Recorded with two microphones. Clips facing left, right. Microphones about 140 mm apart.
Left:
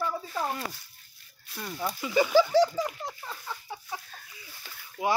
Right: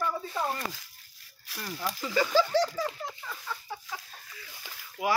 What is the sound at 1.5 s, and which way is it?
Speech, 90° right.